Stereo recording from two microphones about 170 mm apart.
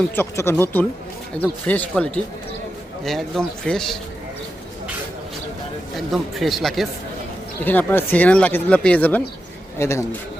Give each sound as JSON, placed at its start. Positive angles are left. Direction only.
{"t": 0.2, "sound": "a man's voice", "side_deg": 15}
{"t": 6.1, "sound": "a man's voice", "side_deg": 0}